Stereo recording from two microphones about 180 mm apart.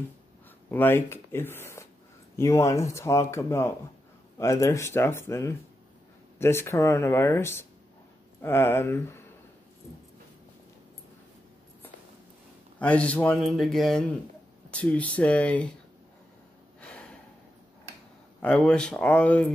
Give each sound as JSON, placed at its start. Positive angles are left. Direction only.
{"t": 0.7, "sound": "speech", "side_deg": 10}
{"t": 12.7, "sound": "speech", "side_deg": 5}
{"t": 18.4, "sound": "speech", "side_deg": 5}